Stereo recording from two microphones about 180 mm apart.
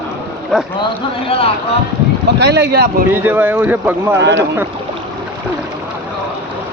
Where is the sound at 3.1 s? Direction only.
10° right (ahead or behind).